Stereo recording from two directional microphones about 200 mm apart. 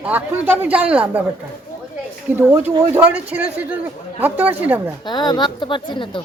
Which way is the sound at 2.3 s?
10° right (ahead or behind).